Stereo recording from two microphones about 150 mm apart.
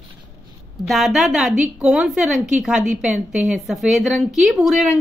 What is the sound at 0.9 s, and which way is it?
A woman's voice, centre (ahead or behind).